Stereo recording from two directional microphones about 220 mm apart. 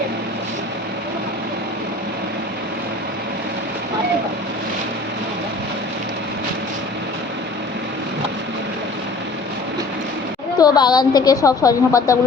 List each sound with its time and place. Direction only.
10.6 s a woman's voice: 20° left (ahead or behind)